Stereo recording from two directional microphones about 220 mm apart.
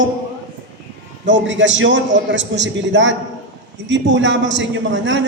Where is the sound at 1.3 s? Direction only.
55° right (ahead or behind).